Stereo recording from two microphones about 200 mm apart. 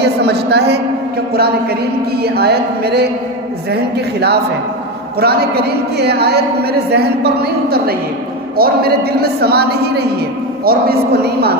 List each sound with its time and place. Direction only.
0.0 s a woman's voice: 55° right (ahead or behind)